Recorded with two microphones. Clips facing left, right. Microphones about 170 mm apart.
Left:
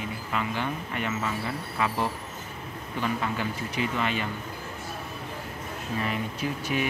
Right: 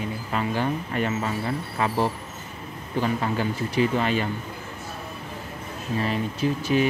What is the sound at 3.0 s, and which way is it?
Speech, 35° right (ahead or behind).